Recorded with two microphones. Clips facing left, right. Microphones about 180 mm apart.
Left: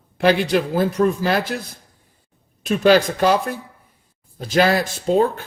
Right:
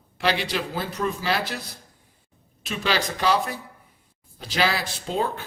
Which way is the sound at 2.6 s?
50° left (ahead or behind).